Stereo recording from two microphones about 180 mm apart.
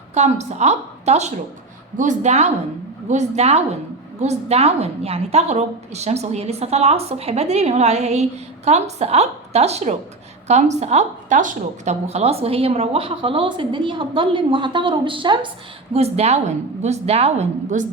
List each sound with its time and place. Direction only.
0.1 s a woman's voice: 40° right (ahead or behind)